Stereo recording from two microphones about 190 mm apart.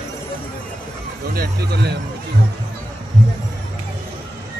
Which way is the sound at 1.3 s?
55° right (ahead or behind).